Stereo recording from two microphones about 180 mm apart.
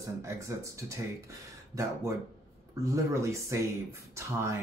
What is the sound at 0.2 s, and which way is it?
Speech, 15° right (ahead or behind).